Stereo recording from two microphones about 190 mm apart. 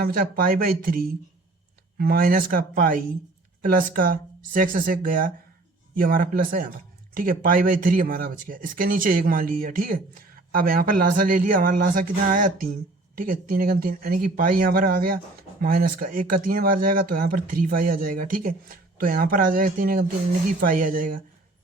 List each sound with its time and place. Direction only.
0.0 s speech: 50° right (ahead or behind)